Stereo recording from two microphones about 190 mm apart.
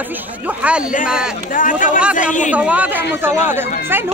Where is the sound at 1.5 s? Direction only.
45° left (ahead or behind).